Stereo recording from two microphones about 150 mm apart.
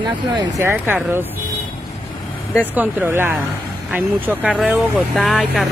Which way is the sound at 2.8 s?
10° right (ahead or behind).